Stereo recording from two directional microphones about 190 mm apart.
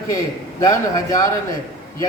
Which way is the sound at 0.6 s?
20° left (ahead or behind).